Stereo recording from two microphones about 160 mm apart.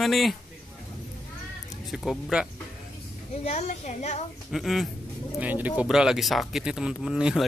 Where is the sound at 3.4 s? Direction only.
45° left (ahead or behind).